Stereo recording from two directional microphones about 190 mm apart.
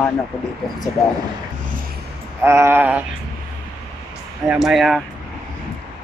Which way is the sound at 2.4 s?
15° right (ahead or behind).